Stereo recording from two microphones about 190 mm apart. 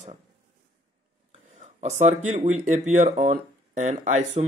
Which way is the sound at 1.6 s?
35° right (ahead or behind).